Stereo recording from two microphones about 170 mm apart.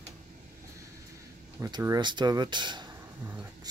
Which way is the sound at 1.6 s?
20° right (ahead or behind).